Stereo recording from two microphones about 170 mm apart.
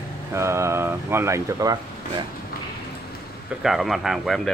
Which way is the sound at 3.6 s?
Centre (ahead or behind).